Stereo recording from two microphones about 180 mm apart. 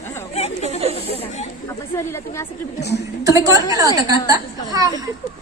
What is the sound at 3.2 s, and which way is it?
A woman's voice, 20° right (ahead or behind).